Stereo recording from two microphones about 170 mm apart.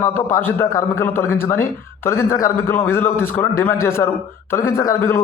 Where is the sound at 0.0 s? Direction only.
15° left (ahead or behind).